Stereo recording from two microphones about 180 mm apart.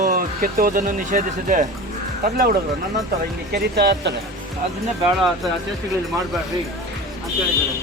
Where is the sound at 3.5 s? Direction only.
65° right (ahead or behind).